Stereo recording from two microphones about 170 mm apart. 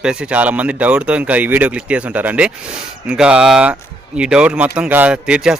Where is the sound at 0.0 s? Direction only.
5° right (ahead or behind).